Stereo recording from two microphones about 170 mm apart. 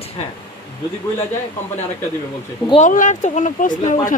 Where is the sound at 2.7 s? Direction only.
45° left (ahead or behind).